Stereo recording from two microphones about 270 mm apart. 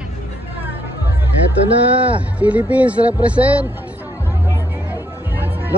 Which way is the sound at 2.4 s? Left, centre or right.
Centre.